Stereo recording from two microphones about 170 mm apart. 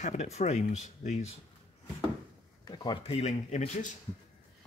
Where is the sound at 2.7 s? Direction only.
30° left (ahead or behind).